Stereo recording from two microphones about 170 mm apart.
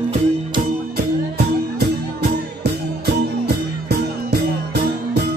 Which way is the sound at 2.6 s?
75° right (ahead or behind).